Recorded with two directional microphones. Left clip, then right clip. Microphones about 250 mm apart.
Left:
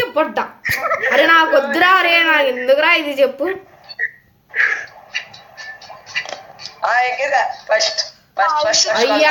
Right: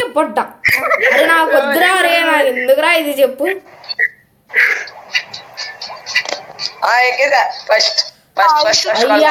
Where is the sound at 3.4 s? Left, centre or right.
Right.